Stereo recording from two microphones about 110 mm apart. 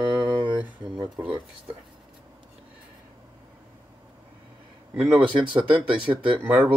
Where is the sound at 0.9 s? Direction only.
40° right (ahead or behind).